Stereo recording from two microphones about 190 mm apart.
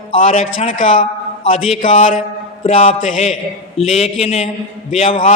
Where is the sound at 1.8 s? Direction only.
40° left (ahead or behind).